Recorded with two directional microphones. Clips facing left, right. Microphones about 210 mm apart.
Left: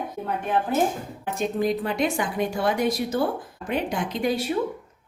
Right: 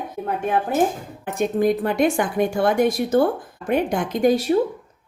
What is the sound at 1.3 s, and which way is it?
A woman's voice, 55° right (ahead or behind).